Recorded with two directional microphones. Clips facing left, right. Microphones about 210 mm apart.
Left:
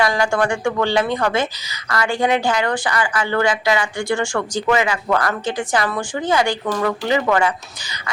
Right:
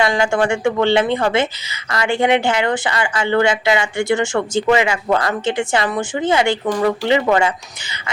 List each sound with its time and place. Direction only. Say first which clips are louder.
0.0 s a woman's voice: right 2 dB; 25° right (ahead or behind)